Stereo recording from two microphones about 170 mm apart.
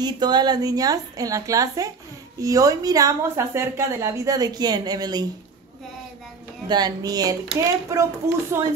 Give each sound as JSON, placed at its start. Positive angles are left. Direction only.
{"t": 0.0, "sound": "a woman's voice", "side_deg": -25}
{"t": 6.7, "sound": "a woman's voice", "side_deg": -25}